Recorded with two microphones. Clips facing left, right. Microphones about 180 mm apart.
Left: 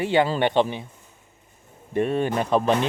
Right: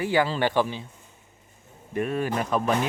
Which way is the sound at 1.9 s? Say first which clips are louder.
Left 4 dB; 30° left (ahead or behind).